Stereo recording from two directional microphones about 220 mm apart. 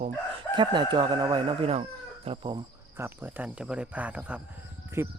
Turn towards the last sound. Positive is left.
turn(degrees=-10)  # may be behind; listen again after turning